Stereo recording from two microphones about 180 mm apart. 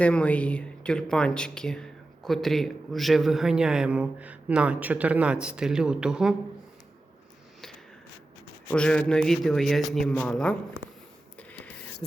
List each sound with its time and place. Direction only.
0.0 s speech: 5° left (ahead or behind)
8.7 s speech: 5° left (ahead or behind)
11.3 s a sound: 5° left (ahead or behind)